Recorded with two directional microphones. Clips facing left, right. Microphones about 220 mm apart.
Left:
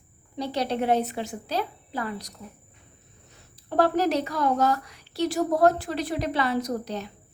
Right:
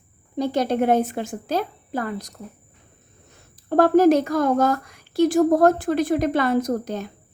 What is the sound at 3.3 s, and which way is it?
A woman's voice, 50° right (ahead or behind).